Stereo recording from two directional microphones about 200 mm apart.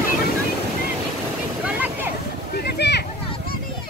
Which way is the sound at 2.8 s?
60° left (ahead or behind).